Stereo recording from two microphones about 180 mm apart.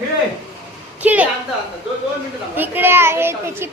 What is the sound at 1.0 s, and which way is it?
Speech, 10° right (ahead or behind).